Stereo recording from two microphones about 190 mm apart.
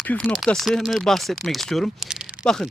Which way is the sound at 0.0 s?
5° left (ahead or behind).